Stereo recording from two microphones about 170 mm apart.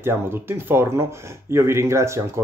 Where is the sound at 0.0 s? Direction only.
15° right (ahead or behind).